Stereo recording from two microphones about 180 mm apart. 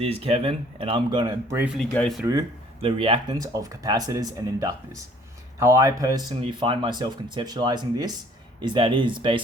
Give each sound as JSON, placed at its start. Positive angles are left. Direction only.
{"t": 0.0, "sound": "speech", "side_deg": -35}
{"t": 1.9, "sound": "speech", "side_deg": 5}
{"t": 2.8, "sound": "speech", "side_deg": -30}